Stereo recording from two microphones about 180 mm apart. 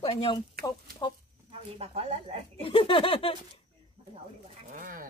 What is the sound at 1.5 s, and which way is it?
Speech, 35° right (ahead or behind).